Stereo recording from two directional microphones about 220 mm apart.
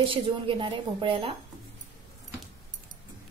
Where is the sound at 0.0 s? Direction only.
25° right (ahead or behind).